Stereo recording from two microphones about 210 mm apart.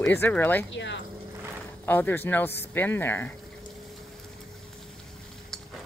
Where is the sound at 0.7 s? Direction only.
60° left (ahead or behind).